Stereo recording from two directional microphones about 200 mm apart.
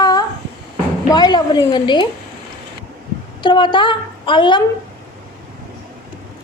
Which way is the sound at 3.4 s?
25° left (ahead or behind).